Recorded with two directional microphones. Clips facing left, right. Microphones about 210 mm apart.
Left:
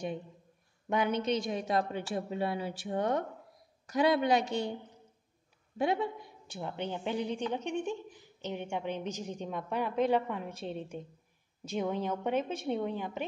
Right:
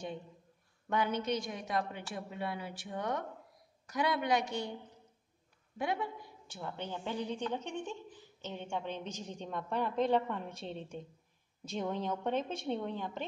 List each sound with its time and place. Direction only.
0.8 s a woman's voice: 15° left (ahead or behind)
5.8 s a woman's voice: 25° left (ahead or behind); by 13.2 s 10° left (ahead or behind)